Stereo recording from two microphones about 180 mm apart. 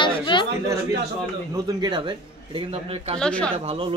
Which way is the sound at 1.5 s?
20° right (ahead or behind).